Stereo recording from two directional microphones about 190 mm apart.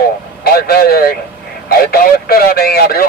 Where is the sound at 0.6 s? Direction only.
55° left (ahead or behind).